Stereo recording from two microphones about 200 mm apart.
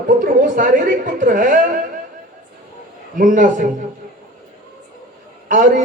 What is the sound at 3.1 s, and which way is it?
Speech, 40° right (ahead or behind).